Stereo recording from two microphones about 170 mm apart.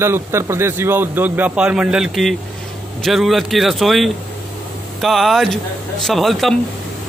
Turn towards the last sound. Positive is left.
turn(degrees=0)  # may be behind; listen again after turning